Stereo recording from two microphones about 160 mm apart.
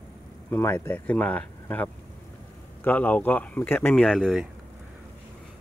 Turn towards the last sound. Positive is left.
turn(degrees=0)  # may be behind; listen again after turning